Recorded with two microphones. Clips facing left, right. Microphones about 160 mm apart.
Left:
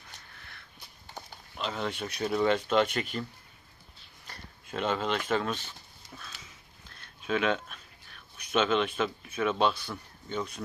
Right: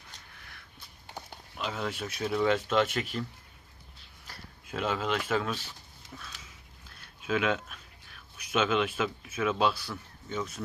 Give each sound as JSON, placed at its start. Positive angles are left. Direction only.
{"t": 1.5, "sound": "speech", "side_deg": -5}
{"t": 4.3, "sound": "speech", "side_deg": -5}
{"t": 6.9, "sound": "a sound", "side_deg": -5}
{"t": 10.2, "sound": "speech", "side_deg": -5}